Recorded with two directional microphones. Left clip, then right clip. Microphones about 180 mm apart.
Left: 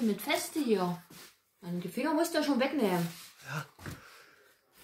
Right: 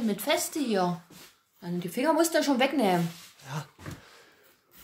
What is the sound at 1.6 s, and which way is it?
A woman's voice, 55° right (ahead or behind).